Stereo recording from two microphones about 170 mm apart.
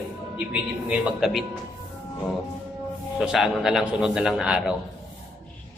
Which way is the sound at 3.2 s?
Centre (ahead or behind).